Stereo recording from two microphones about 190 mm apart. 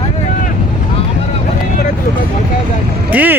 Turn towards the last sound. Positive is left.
turn(degrees=-10)  # may be behind; listen again after turning